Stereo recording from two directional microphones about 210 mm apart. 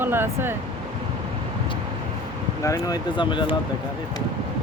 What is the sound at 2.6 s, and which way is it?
Speech, 15° left (ahead or behind).